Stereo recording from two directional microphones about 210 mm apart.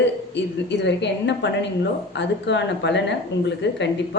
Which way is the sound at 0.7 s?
55° left (ahead or behind).